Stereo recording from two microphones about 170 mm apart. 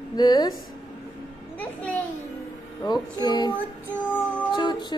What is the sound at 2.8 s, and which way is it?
A woman's voice, 25° left (ahead or behind).